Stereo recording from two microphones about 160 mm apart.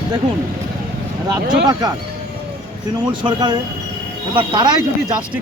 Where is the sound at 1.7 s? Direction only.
25° right (ahead or behind).